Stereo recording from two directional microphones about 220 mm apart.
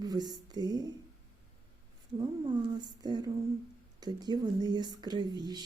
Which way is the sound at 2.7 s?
20° right (ahead or behind).